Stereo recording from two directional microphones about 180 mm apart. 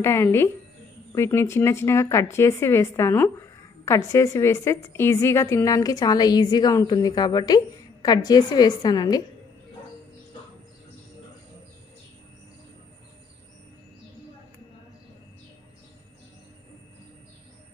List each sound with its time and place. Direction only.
0.0 s a woman's voice: 15° left (ahead or behind)